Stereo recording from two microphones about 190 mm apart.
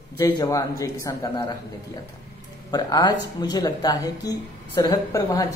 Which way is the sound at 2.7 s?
20° left (ahead or behind).